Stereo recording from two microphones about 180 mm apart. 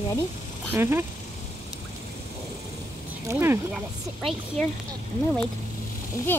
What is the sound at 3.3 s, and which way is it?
Speech, 15° right (ahead or behind).